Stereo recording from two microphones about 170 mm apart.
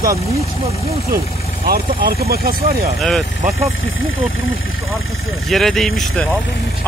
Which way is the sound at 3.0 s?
Centre (ahead or behind).